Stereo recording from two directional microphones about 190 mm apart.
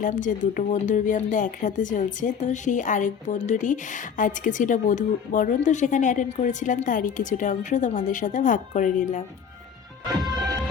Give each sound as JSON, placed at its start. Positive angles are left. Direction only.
{"t": 0.0, "sound": "speech", "side_deg": 40}